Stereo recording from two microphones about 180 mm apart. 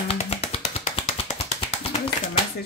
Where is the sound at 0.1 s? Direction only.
35° left (ahead or behind).